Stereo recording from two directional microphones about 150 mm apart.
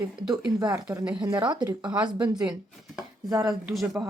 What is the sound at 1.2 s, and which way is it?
Speech, 30° right (ahead or behind).